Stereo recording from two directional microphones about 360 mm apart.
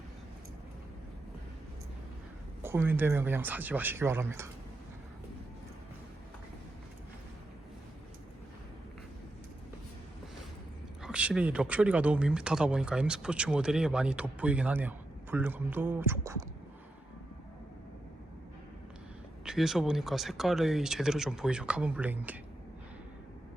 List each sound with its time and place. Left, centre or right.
2.6 s speech: centre
11.0 s speech: centre
19.5 s speech: centre